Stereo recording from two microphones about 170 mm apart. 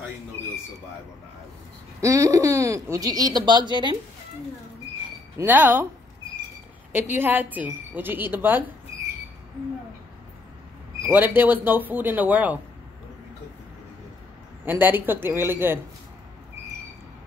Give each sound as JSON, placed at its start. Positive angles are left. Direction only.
{"t": 2.0, "sound": "speech", "side_deg": -20}
{"t": 5.4, "sound": "a woman's voice", "side_deg": -10}
{"t": 6.9, "sound": "a woman's voice", "side_deg": -15}
{"t": 11.0, "sound": "a woman's voice", "side_deg": -10}
{"t": 14.6, "sound": "a woman's voice", "side_deg": -10}